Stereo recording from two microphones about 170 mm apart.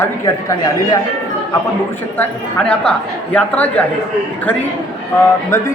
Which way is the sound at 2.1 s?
5° left (ahead or behind).